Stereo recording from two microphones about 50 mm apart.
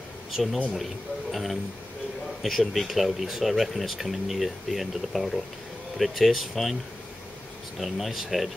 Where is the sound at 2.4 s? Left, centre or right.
Centre.